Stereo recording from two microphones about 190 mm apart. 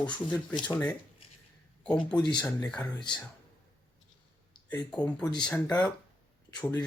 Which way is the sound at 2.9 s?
25° left (ahead or behind).